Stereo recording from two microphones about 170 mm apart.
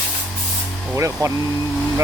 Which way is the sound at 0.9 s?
15° right (ahead or behind).